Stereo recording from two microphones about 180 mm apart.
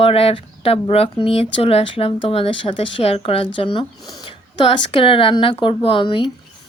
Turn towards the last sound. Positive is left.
turn(degrees=30)  # may be behind; listen again after turning